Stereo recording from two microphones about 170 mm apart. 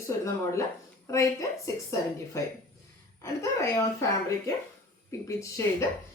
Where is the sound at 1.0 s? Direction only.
15° left (ahead or behind).